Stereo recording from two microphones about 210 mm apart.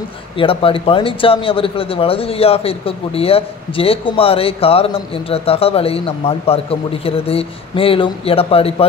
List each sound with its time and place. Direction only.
0.4 s speech: 25° left (ahead or behind)